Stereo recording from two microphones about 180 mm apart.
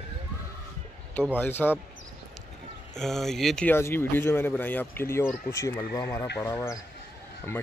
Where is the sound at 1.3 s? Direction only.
10° left (ahead or behind).